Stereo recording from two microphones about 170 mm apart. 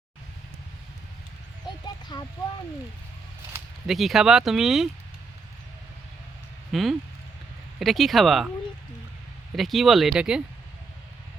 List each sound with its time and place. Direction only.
2.1 s speech: 25° left (ahead or behind)
3.8 s speech: centre (ahead or behind)
6.7 s speech: centre (ahead or behind)
9.6 s speech: centre (ahead or behind)